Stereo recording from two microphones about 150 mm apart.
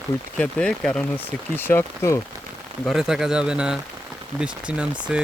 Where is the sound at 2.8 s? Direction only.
Centre (ahead or behind).